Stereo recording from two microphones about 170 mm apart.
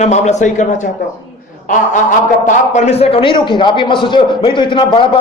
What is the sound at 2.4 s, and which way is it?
A man's voice, 45° left (ahead or behind).